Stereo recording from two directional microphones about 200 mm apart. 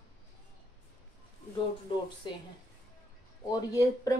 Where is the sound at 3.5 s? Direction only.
15° left (ahead or behind).